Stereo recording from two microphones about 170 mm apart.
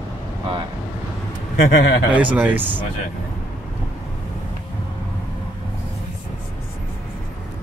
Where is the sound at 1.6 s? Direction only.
90° left.